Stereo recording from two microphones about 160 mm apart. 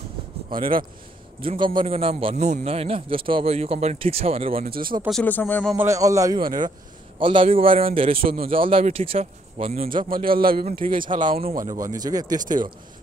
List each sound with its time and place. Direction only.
0.5 s a man's voice: 60° right (ahead or behind)
1.4 s a man's voice: 35° right (ahead or behind)
4.6 s a man's voice: 65° right (ahead or behind)
5.2 s speech: 10° left (ahead or behind)
5.8 s a man's voice: 20° right (ahead or behind); by 9.8 s 40° right (ahead or behind)
9.8 s a man's voice: 60° right (ahead or behind)
10.8 s a man's voice: 35° right (ahead or behind)
11.6 s speech: 20° right (ahead or behind)
12.4 s a man's voice: 55° right (ahead or behind)